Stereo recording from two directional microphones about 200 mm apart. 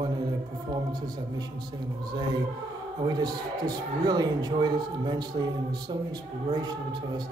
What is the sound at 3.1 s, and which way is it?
Speech, 20° right (ahead or behind).